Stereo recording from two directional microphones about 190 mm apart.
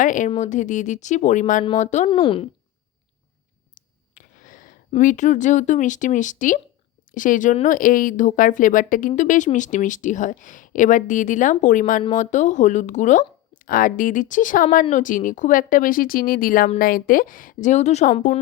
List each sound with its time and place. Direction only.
0.0 s speech: 40° left (ahead or behind)
2.0 s speech: 25° left (ahead or behind)
3.8 s a sound: 45° left (ahead or behind)
7.1 s speech: 45° left (ahead or behind)